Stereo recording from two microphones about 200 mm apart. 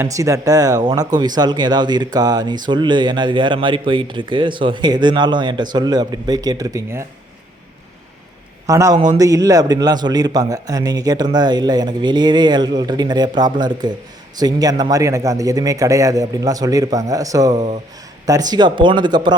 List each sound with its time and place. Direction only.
0.0 s speech: 15° right (ahead or behind)
8.6 s a man's voice: 15° right (ahead or behind)